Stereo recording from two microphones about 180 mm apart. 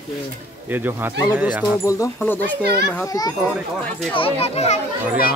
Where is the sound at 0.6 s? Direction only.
10° right (ahead or behind).